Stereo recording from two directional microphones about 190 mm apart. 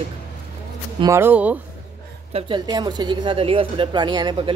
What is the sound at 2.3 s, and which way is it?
A woman's voice, 25° right (ahead or behind).